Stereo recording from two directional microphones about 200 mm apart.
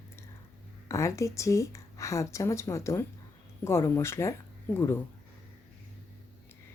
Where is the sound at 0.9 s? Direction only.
15° left (ahead or behind).